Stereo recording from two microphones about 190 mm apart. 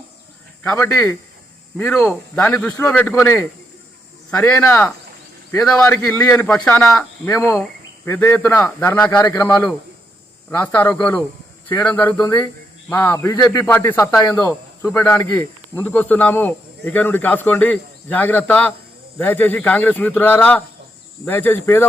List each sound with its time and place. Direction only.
0.6 s speech: 10° left (ahead or behind)
6.0 s speech: 15° left (ahead or behind)
6.3 s speech: 5° left (ahead or behind)
6.9 s speech: 15° left (ahead or behind)
9.1 s a man's voice: 20° left (ahead or behind)
10.5 s speech: 10° left (ahead or behind)